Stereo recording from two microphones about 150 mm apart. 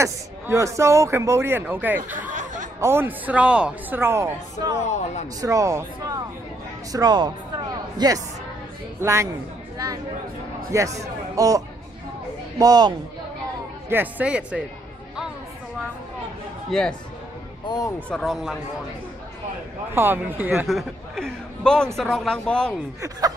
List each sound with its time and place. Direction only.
0.0 s a man's voice: 20° right (ahead or behind)
2.3 s a sound: 55° right (ahead or behind)
2.8 s speech: 15° right (ahead or behind)
4.8 s speech: 50° left (ahead or behind)
5.4 s a man's voice: 20° right (ahead or behind)
10.7 s a man's voice: 20° right (ahead or behind)
13.8 s speech: 10° right (ahead or behind)
16.7 s a man's voice: centre (ahead or behind)
17.6 s speech: 25° left (ahead or behind)
18.1 s a man's voice: centre (ahead or behind)
19.9 s speech: 15° right (ahead or behind)
20.6 s a man's voice: centre (ahead or behind)